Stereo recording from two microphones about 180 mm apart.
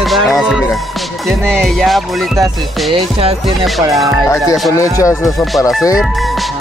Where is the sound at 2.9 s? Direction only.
35° right (ahead or behind).